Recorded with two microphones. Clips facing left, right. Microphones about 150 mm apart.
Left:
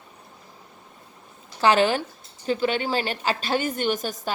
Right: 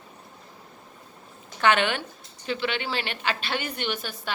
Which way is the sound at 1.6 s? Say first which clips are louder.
Left 3 dB; 35° left (ahead or behind).